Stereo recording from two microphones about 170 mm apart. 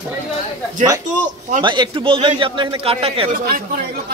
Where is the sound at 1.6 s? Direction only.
30° right (ahead or behind).